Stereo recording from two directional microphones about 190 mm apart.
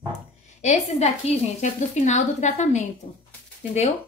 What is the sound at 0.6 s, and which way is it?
A woman's voice, 35° left (ahead or behind).